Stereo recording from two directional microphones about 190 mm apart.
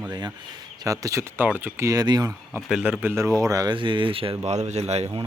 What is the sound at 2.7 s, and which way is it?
Speech, 5° right (ahead or behind).